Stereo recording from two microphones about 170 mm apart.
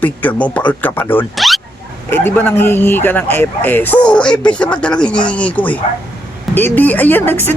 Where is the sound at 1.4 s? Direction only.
Centre (ahead or behind).